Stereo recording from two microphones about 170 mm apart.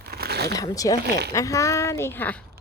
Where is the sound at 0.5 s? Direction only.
20° left (ahead or behind).